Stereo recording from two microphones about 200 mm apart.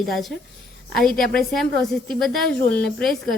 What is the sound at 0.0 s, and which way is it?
A woman's voice, centre (ahead or behind).